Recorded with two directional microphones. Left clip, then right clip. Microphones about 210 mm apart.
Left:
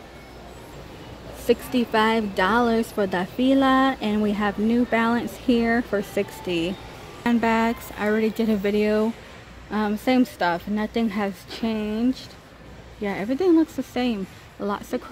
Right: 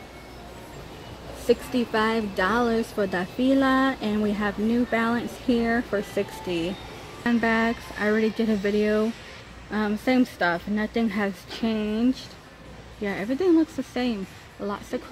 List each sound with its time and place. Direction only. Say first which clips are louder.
1.5 s a woman's voice: left 2 dB; 10° left (ahead or behind)